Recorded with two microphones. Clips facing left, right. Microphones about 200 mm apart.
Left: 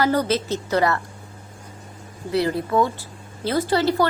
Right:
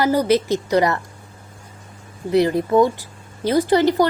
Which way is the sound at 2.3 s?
20° right (ahead or behind).